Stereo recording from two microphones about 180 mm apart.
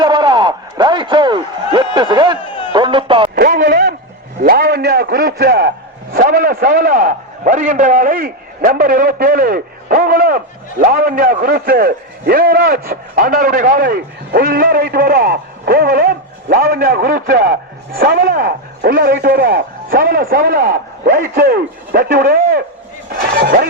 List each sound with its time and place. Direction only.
0.0 s a sound: 25° right (ahead or behind)
2.7 s speech: 25° right (ahead or behind)
3.3 s a man's voice: 55° right (ahead or behind)